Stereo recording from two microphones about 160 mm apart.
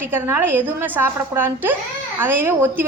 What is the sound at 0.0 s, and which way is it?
A woman's voice, 15° right (ahead or behind).